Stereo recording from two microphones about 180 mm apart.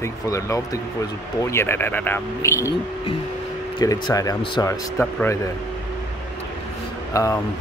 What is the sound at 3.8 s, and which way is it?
Speech, 20° left (ahead or behind).